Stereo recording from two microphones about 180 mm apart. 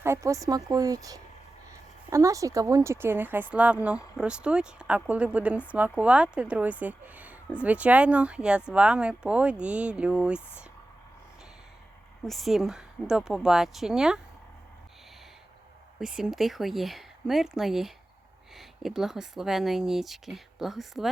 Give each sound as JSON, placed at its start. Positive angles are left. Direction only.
{"t": 0.0, "sound": "a woman's voice", "side_deg": -15}
{"t": 12.2, "sound": "speech", "side_deg": 0}
{"t": 16.0, "sound": "speech", "side_deg": -5}